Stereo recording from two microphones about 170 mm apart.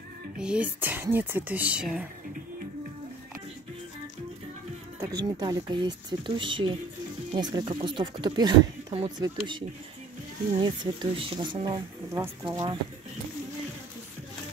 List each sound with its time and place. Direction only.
0.4 s speech: 5° right (ahead or behind)
5.0 s speech: 20° right (ahead or behind)
10.6 s speech: 25° right (ahead or behind)